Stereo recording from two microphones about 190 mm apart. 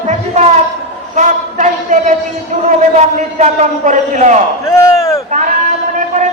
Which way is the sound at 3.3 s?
40° right (ahead or behind).